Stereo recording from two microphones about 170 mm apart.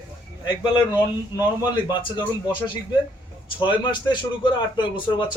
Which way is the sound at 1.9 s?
30° left (ahead or behind).